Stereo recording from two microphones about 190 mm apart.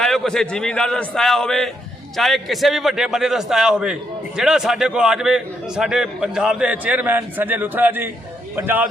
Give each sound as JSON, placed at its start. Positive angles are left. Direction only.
{"t": 0.0, "sound": "a man's voice", "side_deg": 5}